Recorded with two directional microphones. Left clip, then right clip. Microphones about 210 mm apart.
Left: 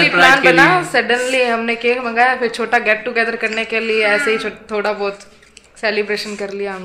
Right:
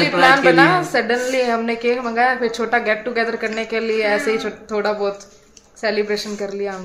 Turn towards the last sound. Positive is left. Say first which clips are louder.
# left 1 dB
turn(degrees=5)  # may be behind; listen again after turning